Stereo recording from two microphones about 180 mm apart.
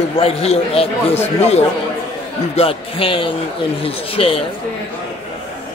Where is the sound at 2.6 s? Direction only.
30° left (ahead or behind).